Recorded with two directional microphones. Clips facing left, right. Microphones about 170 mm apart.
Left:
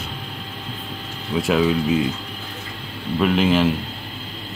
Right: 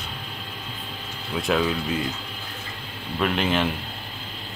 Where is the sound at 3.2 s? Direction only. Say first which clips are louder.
Left 6 dB; centre (ahead or behind).